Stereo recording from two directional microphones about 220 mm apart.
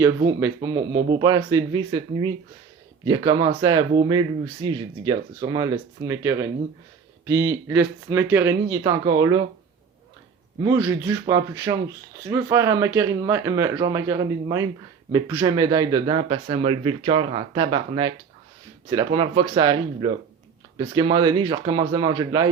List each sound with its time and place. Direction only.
0.0 s speech: 10° right (ahead or behind)
10.6 s speech: 15° right (ahead or behind)